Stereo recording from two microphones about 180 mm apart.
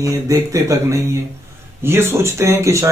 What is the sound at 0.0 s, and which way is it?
A man's voice, 20° right (ahead or behind).